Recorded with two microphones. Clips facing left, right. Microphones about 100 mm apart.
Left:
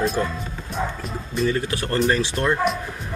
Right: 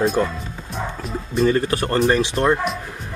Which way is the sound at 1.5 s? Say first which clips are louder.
Right 5 dB; 45° right (ahead or behind).